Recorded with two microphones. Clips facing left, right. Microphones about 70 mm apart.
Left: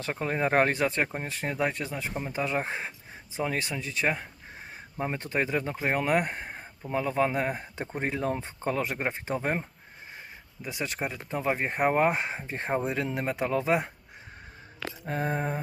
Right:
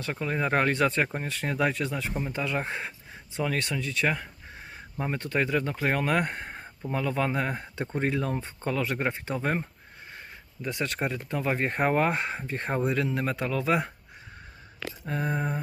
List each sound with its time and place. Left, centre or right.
0.0 s speech: left
0.9 s speech: centre
1.3 s speech: centre
2.4 s speech: left; by 6.6 s centre
6.8 s speech: left
10.6 s speech: centre
15.0 s speech: left